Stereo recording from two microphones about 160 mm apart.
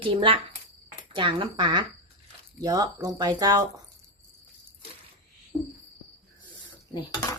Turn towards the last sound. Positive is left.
turn(degrees=25)  # may be behind; listen again after turning